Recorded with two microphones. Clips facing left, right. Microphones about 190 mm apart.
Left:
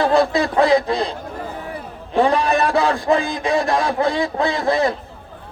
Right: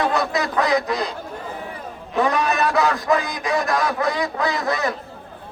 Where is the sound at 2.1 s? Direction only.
30° left (ahead or behind).